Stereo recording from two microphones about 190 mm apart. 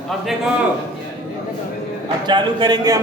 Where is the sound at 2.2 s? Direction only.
25° right (ahead or behind).